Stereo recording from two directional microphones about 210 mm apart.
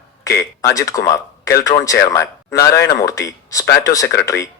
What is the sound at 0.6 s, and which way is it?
Speech, 15° left (ahead or behind).